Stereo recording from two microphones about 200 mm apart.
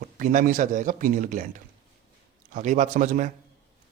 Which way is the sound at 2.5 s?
40° right (ahead or behind).